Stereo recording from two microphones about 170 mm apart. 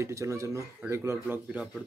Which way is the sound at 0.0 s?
15° right (ahead or behind).